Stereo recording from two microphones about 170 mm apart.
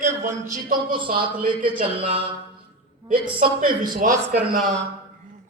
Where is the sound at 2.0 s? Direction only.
35° right (ahead or behind).